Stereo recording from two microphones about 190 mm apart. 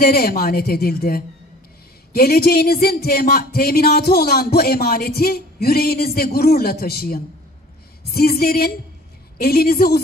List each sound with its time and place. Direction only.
0.0 s speech: 50° left (ahead or behind)